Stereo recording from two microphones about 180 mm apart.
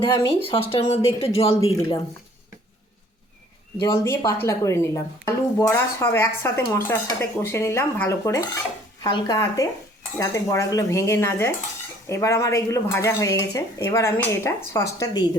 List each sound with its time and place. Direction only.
0.4 s speech: 30° left (ahead or behind)
3.8 s speech: 20° left (ahead or behind)